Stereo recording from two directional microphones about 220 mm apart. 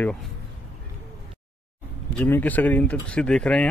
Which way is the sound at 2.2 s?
10° left (ahead or behind).